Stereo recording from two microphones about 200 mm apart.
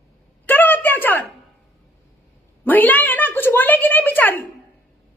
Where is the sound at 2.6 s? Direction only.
10° left (ahead or behind).